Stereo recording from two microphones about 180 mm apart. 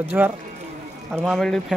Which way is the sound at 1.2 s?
Centre (ahead or behind).